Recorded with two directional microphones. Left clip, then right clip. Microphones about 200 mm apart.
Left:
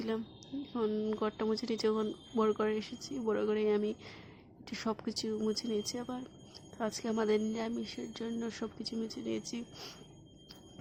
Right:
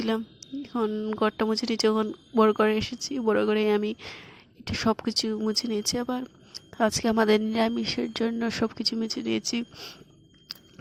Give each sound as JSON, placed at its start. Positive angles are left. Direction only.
{"t": 0.0, "sound": "a woman's voice", "side_deg": -40}